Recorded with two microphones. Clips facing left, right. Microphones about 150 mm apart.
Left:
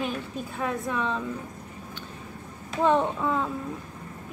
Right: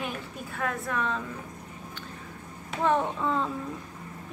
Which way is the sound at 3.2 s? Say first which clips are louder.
Left 1 dB; 10° left (ahead or behind).